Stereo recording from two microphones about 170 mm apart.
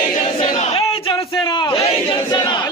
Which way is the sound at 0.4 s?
35° left (ahead or behind).